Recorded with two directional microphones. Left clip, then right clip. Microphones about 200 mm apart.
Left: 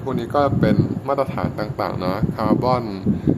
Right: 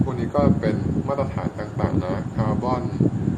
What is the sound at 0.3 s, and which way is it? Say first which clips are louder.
A man's voice: left 4 dB; 50° left (ahead or behind).